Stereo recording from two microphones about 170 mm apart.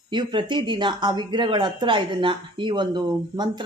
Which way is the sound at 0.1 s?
25° right (ahead or behind).